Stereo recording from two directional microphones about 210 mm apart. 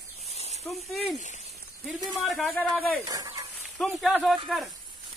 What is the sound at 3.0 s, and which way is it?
Speech, 15° right (ahead or behind).